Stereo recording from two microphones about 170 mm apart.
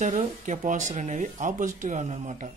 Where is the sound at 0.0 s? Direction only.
50° right (ahead or behind).